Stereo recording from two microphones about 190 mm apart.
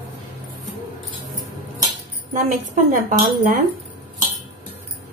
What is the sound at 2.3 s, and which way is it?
Speech, 40° right (ahead or behind).